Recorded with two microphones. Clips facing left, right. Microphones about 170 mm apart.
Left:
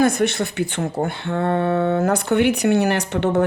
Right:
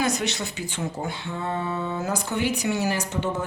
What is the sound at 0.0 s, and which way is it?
Speech, 55° left (ahead or behind).